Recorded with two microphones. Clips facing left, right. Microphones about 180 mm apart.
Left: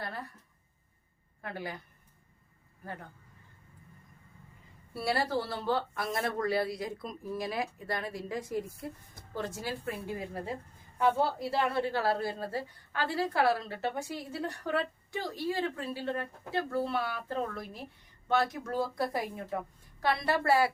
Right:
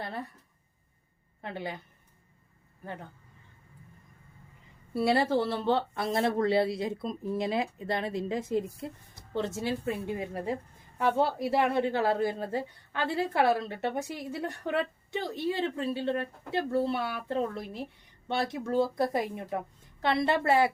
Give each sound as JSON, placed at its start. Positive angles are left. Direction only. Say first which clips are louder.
{"t": 0.0, "sound": "speech", "louder": "right 3 dB", "side_deg": -20}
{"t": 1.4, "sound": "speech", "louder": "right 2 dB", "side_deg": -25}
{"t": 4.9, "sound": "a woman's voice", "louder": "right 6 dB", "side_deg": -20}